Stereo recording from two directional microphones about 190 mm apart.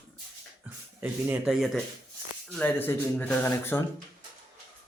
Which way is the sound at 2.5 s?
10° left (ahead or behind).